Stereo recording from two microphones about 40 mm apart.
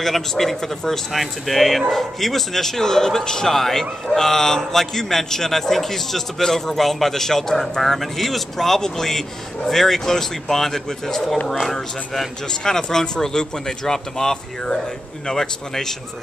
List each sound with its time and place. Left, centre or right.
0.0 s a man's voice: centre